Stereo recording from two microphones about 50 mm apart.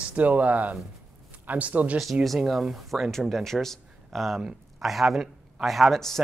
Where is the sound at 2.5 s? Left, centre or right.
Centre.